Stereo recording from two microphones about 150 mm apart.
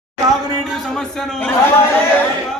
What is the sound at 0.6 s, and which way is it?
Speech, 5° left (ahead or behind).